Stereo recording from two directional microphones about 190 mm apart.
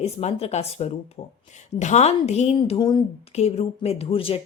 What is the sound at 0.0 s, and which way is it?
Speech, 35° left (ahead or behind).